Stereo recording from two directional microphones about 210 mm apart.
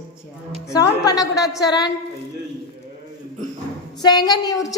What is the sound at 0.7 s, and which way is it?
A woman's voice, 15° left (ahead or behind).